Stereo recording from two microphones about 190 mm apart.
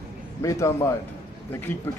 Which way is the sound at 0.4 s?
15° left (ahead or behind).